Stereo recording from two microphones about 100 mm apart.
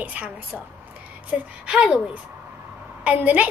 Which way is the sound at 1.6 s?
10° right (ahead or behind).